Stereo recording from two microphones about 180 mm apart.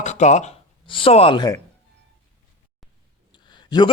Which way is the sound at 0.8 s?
30° left (ahead or behind).